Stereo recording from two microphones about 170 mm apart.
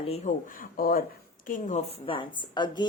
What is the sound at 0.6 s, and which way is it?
Speech, 55° left (ahead or behind).